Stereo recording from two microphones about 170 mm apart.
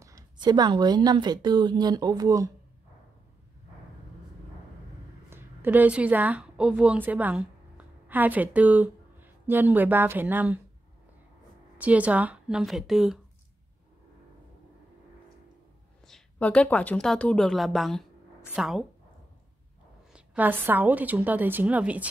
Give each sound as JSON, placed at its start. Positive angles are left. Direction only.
{"t": 0.0, "sound": "a woman's voice", "side_deg": -20}
{"t": 5.3, "sound": "a woman's voice", "side_deg": -10}
{"t": 11.8, "sound": "speech", "side_deg": -10}
{"t": 16.1, "sound": "speech", "side_deg": 5}
{"t": 20.1, "sound": "a woman's voice", "side_deg": -10}